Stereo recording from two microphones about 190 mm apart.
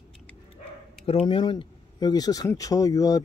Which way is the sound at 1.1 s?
30° left (ahead or behind).